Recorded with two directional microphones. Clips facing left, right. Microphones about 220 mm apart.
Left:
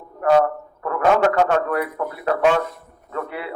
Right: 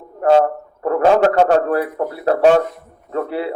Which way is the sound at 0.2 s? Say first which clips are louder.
Right 3 dB; 30° right (ahead or behind).